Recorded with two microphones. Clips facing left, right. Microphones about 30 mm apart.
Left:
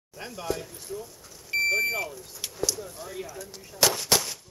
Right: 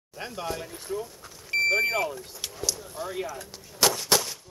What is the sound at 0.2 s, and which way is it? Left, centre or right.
Speech, centre.